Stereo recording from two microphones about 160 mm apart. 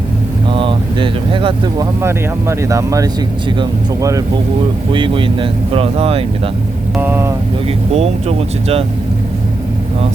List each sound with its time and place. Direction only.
0.5 s speech: 30° right (ahead or behind)
4.9 s speech: 30° right (ahead or behind)
6.9 s speech: 10° right (ahead or behind)
7.9 s speech: 40° right (ahead or behind)